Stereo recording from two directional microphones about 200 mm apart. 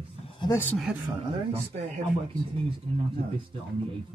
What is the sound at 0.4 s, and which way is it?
Speech, 15° left (ahead or behind).